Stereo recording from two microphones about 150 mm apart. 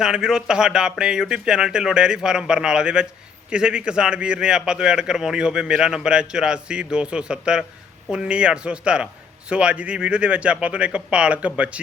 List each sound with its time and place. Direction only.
0.0 s a man's voice: 5° right (ahead or behind)